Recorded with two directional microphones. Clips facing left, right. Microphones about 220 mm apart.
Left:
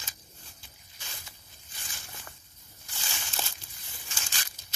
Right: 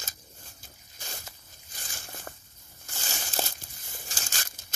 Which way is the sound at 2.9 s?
45° right (ahead or behind).